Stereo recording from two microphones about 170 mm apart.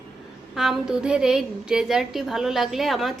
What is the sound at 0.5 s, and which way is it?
A woman's voice, centre (ahead or behind).